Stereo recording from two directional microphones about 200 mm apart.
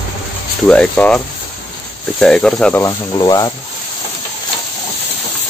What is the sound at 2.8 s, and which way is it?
Speech, 20° left (ahead or behind).